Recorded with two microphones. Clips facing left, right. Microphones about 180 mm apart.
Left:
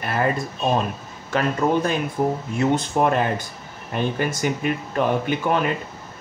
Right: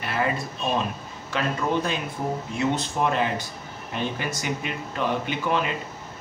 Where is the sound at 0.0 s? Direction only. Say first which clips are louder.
Left 4 dB; 45° left (ahead or behind).